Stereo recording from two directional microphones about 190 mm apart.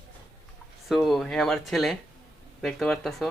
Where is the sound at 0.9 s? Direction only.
Centre (ahead or behind).